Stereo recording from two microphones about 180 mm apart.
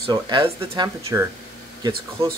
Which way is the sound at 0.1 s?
25° right (ahead or behind).